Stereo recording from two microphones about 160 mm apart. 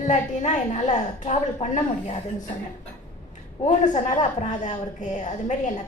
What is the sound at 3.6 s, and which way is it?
A woman's voice, 45° left (ahead or behind).